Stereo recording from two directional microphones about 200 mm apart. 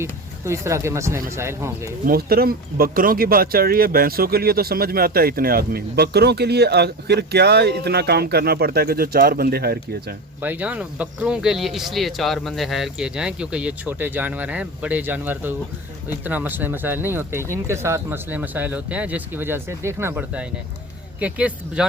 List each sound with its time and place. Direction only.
0.0 s speech: 15° right (ahead or behind)
2.0 s speech: 50° right (ahead or behind)
10.4 s speech: 10° right (ahead or behind)